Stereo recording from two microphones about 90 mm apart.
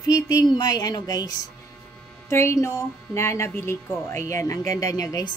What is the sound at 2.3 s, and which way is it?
A woman's voice, 30° left (ahead or behind).